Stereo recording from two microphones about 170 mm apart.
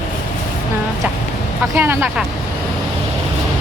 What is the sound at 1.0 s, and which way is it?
Speech, 10° right (ahead or behind).